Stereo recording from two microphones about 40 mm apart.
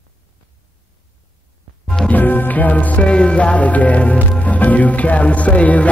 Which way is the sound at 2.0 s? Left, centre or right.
Left.